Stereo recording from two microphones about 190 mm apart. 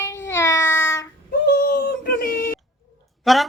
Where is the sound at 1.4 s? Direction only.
55° left (ahead or behind).